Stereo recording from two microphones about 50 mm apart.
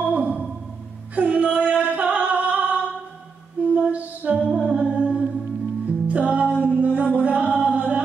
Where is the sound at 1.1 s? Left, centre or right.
Right.